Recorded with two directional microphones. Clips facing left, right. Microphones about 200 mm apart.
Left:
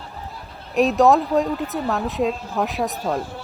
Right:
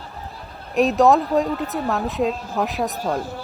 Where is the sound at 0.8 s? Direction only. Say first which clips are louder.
Even; centre (ahead or behind).